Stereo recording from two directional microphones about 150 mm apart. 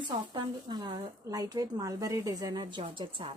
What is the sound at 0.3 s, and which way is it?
Speech, 30° right (ahead or behind).